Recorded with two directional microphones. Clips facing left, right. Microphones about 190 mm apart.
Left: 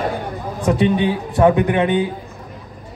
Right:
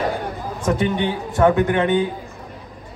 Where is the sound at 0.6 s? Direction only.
15° left (ahead or behind).